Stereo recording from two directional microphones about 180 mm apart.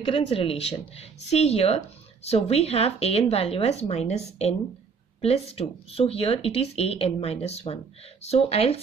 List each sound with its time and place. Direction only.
0.0 s speech: 30° left (ahead or behind)